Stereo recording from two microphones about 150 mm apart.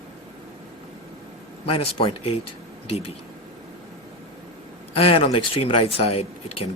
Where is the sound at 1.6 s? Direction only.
40° left (ahead or behind).